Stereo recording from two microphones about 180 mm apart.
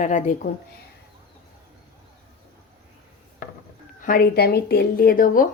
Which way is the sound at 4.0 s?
50° left (ahead or behind).